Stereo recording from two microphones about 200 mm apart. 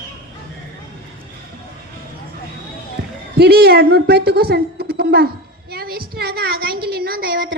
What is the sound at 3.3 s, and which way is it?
A woman's voice, 50° right (ahead or behind).